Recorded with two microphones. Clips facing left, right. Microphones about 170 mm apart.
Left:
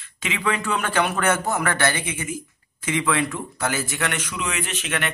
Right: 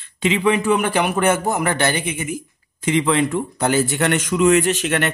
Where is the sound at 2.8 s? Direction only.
30° right (ahead or behind).